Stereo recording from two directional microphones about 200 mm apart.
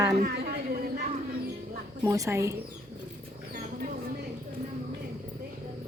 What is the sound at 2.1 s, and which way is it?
Speech, 15° right (ahead or behind).